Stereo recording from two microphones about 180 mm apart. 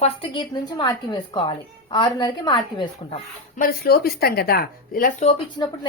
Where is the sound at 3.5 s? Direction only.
55° left (ahead or behind).